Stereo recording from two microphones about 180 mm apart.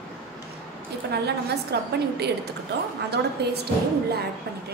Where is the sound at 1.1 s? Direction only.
65° right (ahead or behind).